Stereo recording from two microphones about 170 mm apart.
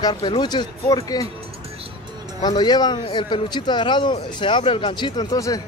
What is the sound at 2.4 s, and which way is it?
A man's voice, 25° left (ahead or behind).